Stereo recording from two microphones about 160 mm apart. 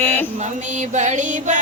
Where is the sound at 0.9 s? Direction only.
50° right (ahead or behind).